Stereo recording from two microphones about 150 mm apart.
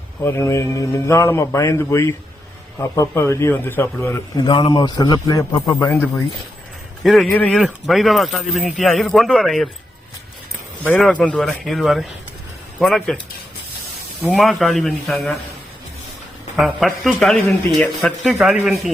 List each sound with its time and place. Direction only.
0.3 s a man's voice: 20° left (ahead or behind)
4.4 s a man's voice: 35° left (ahead or behind)
7.0 s a man's voice: centre (ahead or behind)
11.0 s a man's voice: 5° left (ahead or behind)
14.3 s a man's voice: centre (ahead or behind)
16.6 s a man's voice: centre (ahead or behind)